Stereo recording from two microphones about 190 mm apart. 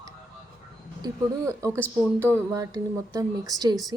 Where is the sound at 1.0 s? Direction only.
15° right (ahead or behind).